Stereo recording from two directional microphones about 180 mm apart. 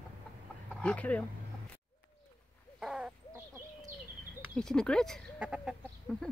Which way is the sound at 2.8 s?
5° right (ahead or behind).